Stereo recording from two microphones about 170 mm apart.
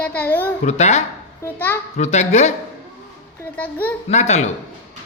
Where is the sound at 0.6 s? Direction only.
40° left (ahead or behind).